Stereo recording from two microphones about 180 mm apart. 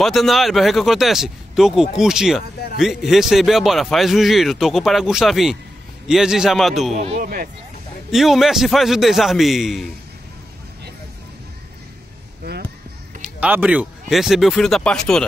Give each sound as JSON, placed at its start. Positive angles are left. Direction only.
{"t": 0.0, "sound": "a man's voice", "side_deg": 0}
{"t": 6.9, "sound": "speech", "side_deg": -35}
{"t": 7.2, "sound": "speech", "side_deg": -50}
{"t": 8.1, "sound": "a man's voice", "side_deg": 0}
{"t": 13.2, "sound": "speech", "side_deg": -5}